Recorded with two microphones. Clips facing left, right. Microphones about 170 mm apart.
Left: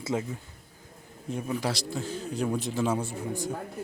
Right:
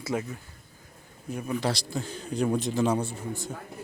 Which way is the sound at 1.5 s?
5° left (ahead or behind).